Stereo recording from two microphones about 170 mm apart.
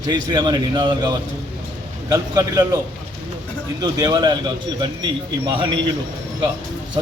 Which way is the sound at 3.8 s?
25° right (ahead or behind).